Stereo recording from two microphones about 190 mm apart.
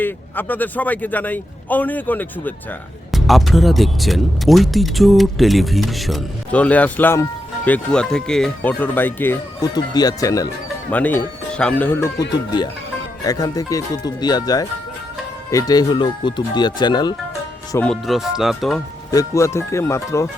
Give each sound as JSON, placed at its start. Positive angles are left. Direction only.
{"t": 0.0, "sound": "a man's voice", "side_deg": 10}
{"t": 13.2, "sound": "speech", "side_deg": 20}
{"t": 17.7, "sound": "a man's voice", "side_deg": 10}
{"t": 18.0, "sound": "speech", "side_deg": 0}
{"t": 19.1, "sound": "a man's voice", "side_deg": 15}